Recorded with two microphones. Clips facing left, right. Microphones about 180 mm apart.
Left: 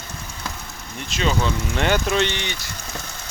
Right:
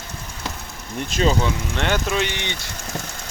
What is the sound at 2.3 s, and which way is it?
Speech, 20° right (ahead or behind).